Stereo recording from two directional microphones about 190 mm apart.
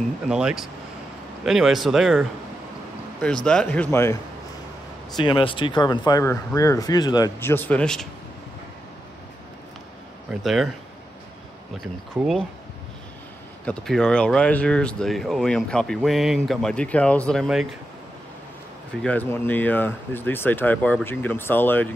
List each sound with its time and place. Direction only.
0.3 s speech: 5° right (ahead or behind)
3.4 s speech: 5° left (ahead or behind)
5.1 s speech: 25° left (ahead or behind); by 8.1 s 5° left (ahead or behind)
10.4 s speech: centre (ahead or behind)
12.2 s speech: 5° right (ahead or behind)
13.7 s speech: 5° left (ahead or behind)
19.0 s speech: 10° left (ahead or behind)